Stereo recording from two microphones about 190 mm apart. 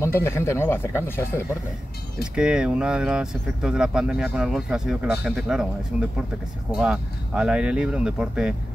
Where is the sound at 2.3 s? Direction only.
5° right (ahead or behind).